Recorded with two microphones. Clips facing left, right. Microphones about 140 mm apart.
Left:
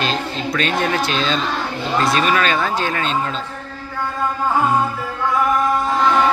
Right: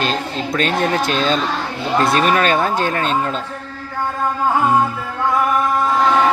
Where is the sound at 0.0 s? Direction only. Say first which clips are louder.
Right 1 dB; 45° right (ahead or behind).